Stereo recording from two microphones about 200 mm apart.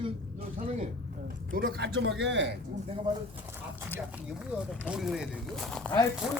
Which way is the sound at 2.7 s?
30° right (ahead or behind).